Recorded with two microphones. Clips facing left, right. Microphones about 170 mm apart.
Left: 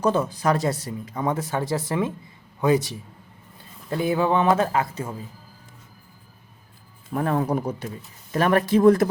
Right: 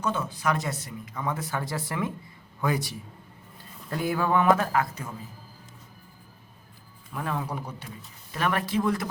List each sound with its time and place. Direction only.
0.0 s speech: 35° left (ahead or behind)
7.1 s speech: 45° left (ahead or behind)